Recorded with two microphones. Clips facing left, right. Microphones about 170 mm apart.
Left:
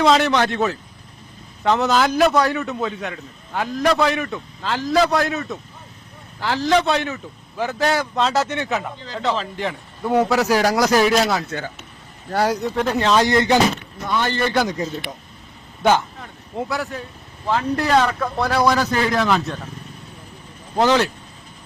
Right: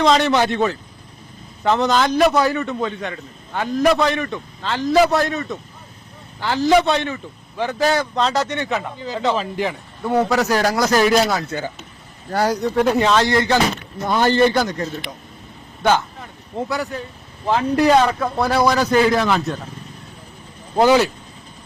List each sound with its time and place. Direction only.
0.0 s a man's voice: centre (ahead or behind)
0.3 s speech: 10° right (ahead or behind)
1.6 s a man's voice: centre (ahead or behind)
10.0 s a man's voice: 10° left (ahead or behind)
12.7 s speech: 10° right (ahead or behind)
13.1 s speech: 20° left (ahead or behind)
14.0 s a man's voice: 40° right (ahead or behind)
14.5 s a man's voice: centre (ahead or behind)
16.2 s a sound: centre (ahead or behind)
17.4 s a man's voice: 15° right (ahead or behind)
20.7 s speech: 10° right (ahead or behind)